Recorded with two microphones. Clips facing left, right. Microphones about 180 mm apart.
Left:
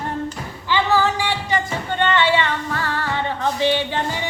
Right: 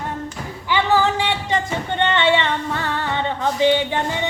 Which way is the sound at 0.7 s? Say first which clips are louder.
Right 1 dB; 20° right (ahead or behind).